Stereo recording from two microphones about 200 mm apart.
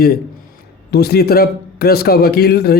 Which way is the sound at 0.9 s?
50° left (ahead or behind).